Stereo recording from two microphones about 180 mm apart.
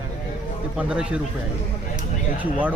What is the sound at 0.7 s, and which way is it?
Speech, 5° right (ahead or behind).